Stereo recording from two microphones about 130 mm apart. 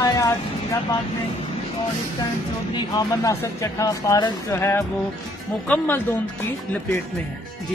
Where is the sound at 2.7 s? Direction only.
30° left (ahead or behind); by 6.0 s 10° left (ahead or behind).